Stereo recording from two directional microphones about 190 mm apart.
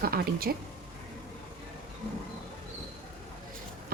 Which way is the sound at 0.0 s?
50° right (ahead or behind).